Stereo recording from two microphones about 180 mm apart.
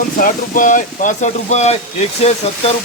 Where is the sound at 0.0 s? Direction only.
50° left (ahead or behind).